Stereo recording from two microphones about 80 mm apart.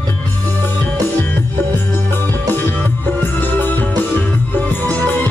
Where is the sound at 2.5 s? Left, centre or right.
Left.